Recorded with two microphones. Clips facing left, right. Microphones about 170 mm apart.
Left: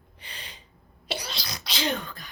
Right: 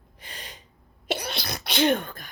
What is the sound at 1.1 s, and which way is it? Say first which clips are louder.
Sneeze: right 5 dB; 55° right (ahead or behind).